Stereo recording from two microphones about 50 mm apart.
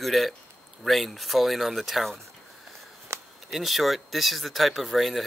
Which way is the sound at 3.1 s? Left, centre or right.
Right.